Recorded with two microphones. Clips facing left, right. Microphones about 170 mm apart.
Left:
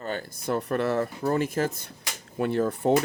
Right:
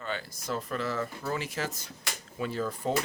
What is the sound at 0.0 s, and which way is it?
Speech, 45° left (ahead or behind).